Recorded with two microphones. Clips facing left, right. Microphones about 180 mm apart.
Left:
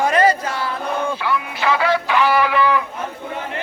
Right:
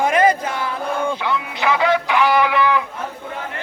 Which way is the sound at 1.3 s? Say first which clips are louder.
Even; 20° right (ahead or behind).